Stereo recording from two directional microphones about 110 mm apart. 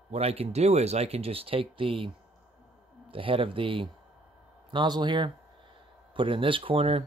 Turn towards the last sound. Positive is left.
turn(degrees=-60)  # may be behind; listen again after turning